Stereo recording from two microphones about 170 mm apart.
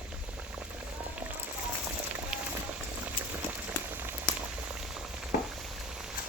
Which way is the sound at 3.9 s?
10° right (ahead or behind).